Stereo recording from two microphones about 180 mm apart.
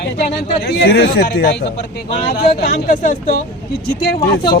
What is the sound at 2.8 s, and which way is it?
Speech, 45° left (ahead or behind).